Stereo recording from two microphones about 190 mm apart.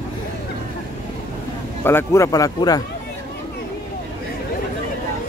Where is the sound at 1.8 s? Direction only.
15° left (ahead or behind).